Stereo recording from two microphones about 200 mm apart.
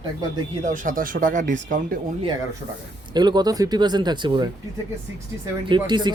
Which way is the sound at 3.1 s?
20° right (ahead or behind).